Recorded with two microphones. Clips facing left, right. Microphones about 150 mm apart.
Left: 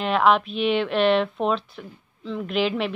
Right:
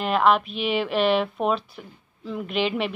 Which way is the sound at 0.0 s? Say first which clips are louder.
Left 1 dB; centre (ahead or behind).